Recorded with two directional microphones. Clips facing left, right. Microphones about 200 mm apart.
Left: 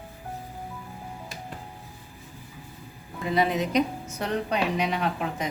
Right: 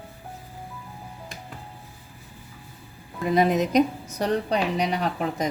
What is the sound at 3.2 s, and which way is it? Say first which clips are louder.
A woman's voice: right 4 dB; 45° right (ahead or behind).